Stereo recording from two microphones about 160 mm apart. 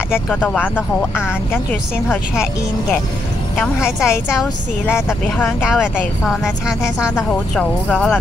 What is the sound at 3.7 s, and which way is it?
Speech, 5° right (ahead or behind).